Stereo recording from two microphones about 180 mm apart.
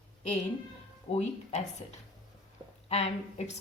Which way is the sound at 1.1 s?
40° left (ahead or behind).